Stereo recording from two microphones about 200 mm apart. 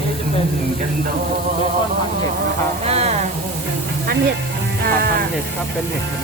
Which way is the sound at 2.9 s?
30° right (ahead or behind).